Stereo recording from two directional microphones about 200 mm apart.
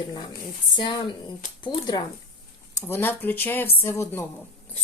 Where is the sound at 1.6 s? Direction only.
20° left (ahead or behind).